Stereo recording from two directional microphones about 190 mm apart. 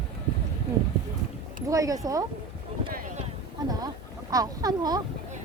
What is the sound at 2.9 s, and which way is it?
Boat, 50° right (ahead or behind).